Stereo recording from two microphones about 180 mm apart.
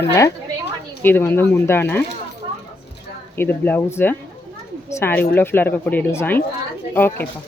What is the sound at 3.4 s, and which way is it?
Speech, 10° left (ahead or behind).